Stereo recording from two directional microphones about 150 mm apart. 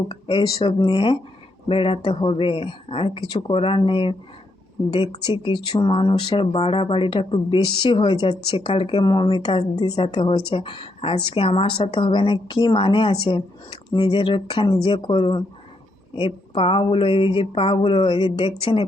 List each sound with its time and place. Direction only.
0.1 s a woman's voice: 35° left (ahead or behind)
5.3 s a woman's voice: 35° left (ahead or behind)
9.8 s a woman's voice: 25° left (ahead or behind)
10.1 s a woman's voice: 40° left (ahead or behind)